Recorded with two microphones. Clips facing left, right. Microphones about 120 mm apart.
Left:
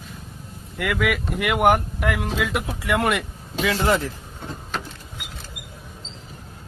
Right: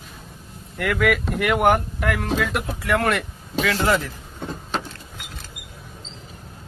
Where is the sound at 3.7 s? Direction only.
25° left (ahead or behind).